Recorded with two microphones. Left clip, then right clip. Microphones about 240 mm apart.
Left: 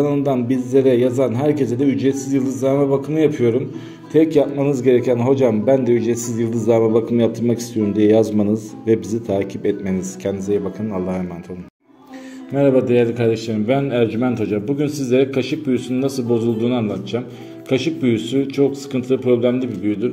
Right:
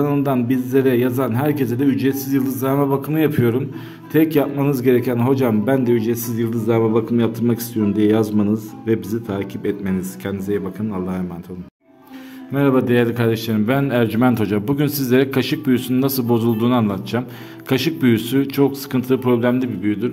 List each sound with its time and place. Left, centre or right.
0.5 s speech: centre
2.3 s speech: right
2.9 s speech: right
12.5 s speech: centre